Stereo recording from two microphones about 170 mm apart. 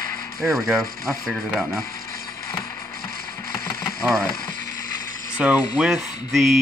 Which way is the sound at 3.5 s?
20° left (ahead or behind).